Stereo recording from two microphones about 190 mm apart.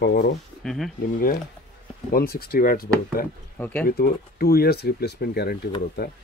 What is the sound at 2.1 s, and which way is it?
Speech, 55° left (ahead or behind).